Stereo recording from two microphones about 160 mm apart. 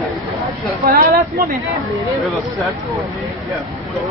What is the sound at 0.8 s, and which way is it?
Speech, 60° right (ahead or behind).